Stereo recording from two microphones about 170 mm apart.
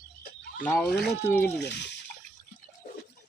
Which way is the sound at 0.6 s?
10° left (ahead or behind).